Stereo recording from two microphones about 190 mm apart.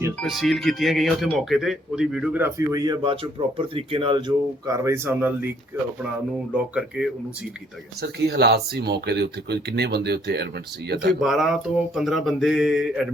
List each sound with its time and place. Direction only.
0.2 s speech: centre (ahead or behind)
8.0 s speech: 60° right (ahead or behind)
11.2 s speech: centre (ahead or behind)